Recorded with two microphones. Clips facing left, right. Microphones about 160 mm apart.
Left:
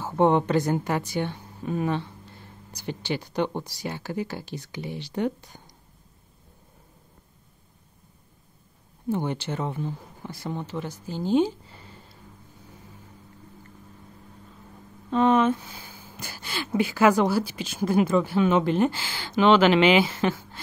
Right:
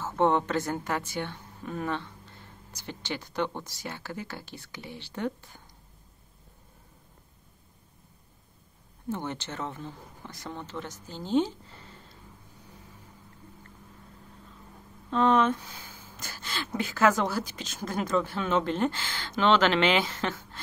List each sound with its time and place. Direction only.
0.0 s speech: 15° left (ahead or behind)
9.1 s speech: 15° left (ahead or behind)
15.0 s speech: 5° left (ahead or behind)